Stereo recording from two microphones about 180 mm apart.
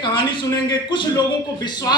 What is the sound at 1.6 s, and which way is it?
Speech, 20° left (ahead or behind).